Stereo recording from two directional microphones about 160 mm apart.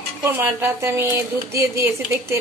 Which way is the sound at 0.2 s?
15° right (ahead or behind).